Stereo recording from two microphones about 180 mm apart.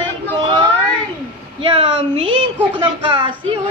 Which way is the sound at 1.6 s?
30° right (ahead or behind).